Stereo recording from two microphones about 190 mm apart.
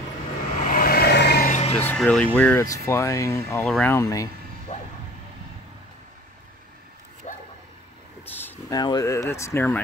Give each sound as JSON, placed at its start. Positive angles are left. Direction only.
{"t": 0.6, "sound": "vehicle", "side_deg": 45}
{"t": 1.7, "sound": "speech", "side_deg": 10}
{"t": 7.3, "sound": "a sound", "side_deg": 35}
{"t": 8.3, "sound": "speech", "side_deg": 10}